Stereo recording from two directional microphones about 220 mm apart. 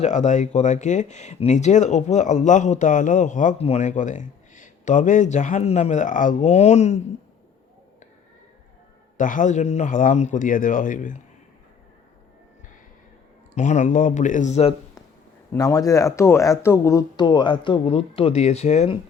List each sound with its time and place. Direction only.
0.0 s speech: 30° left (ahead or behind)
9.1 s speech: 35° left (ahead or behind)
13.6 s speech: 35° left (ahead or behind)
15.5 s speech: 15° left (ahead or behind)